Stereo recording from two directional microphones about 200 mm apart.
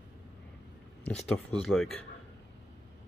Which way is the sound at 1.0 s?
Centre (ahead or behind).